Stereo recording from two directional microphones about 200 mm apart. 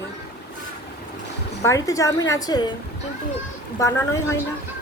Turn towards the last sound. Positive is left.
turn(degrees=15)  # may be behind; listen again after turning